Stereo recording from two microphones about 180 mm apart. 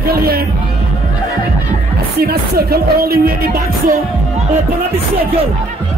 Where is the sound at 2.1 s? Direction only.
60° right (ahead or behind).